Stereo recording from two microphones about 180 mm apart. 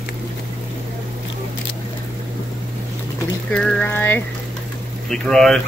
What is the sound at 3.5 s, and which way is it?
Speech, 5° left (ahead or behind).